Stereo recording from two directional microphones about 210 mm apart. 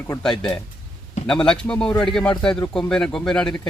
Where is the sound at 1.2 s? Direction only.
5° left (ahead or behind).